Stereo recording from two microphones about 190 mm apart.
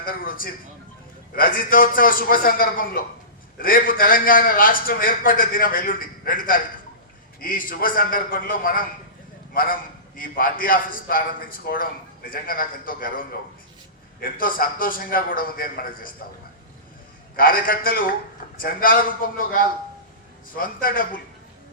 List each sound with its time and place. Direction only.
0.0 s a man's voice: 50° left (ahead or behind)
10.2 s a man's voice: 50° left (ahead or behind)
17.3 s a man's voice: 50° left (ahead or behind)
20.6 s a man's voice: 45° left (ahead or behind)